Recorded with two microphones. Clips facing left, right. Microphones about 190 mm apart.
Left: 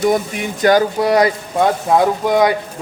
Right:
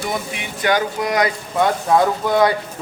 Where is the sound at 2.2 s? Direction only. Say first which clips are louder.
Left 2 dB; 20° left (ahead or behind).